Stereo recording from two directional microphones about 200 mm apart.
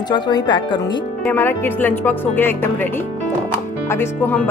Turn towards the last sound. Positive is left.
turn(degrees=10)  # may be behind; listen again after turning